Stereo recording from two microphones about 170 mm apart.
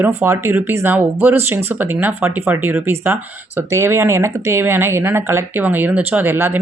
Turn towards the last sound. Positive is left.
turn(degrees=-15)  # may be behind; listen again after turning